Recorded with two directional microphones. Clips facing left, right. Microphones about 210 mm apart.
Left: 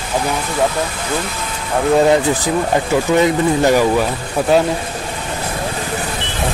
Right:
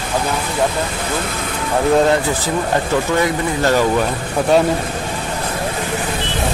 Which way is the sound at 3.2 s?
15° left (ahead or behind).